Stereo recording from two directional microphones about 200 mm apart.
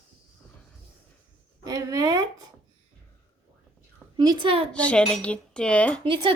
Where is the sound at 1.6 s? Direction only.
15° right (ahead or behind).